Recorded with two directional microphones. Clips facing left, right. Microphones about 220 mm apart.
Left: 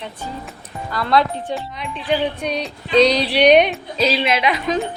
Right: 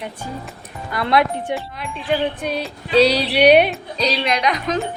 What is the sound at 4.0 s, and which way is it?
Music, 5° left (ahead or behind).